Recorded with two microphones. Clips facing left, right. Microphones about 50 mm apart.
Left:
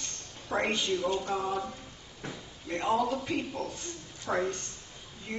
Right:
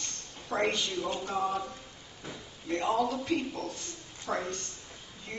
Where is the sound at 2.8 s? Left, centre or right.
Centre.